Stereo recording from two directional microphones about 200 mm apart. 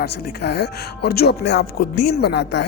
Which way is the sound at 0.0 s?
50° left (ahead or behind).